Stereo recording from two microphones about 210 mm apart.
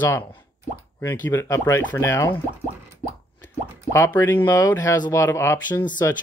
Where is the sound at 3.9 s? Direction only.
10° left (ahead or behind).